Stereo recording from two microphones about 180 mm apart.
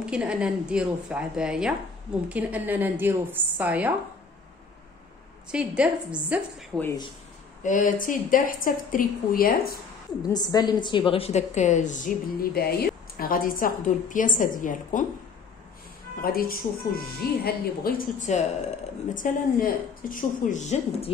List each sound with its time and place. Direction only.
0.0 s a woman's voice: 5° right (ahead or behind)
5.5 s a woman's voice: 5° right (ahead or behind)
6.7 s speech: 5° left (ahead or behind)
7.6 s a woman's voice: 45° left (ahead or behind)
10.3 s a woman's voice: 20° left (ahead or behind); by 15.0 s 45° left (ahead or behind)
16.2 s a woman's voice: 55° left (ahead or behind)